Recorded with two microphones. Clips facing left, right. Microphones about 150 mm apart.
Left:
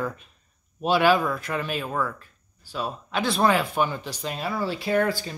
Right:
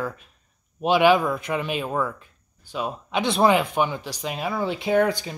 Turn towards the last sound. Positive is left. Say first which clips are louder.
# right 3 dB
turn(degrees=-20)  # may be behind; listen again after turning